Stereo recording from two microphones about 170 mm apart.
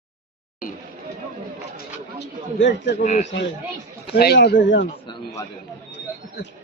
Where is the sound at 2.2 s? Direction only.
90° left.